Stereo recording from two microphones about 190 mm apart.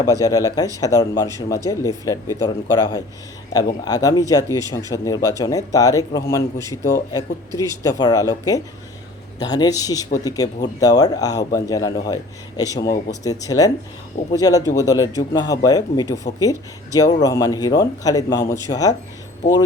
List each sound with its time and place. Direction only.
0.0 s speech: 20° left (ahead or behind)